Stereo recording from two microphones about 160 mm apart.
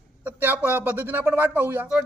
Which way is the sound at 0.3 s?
10° right (ahead or behind).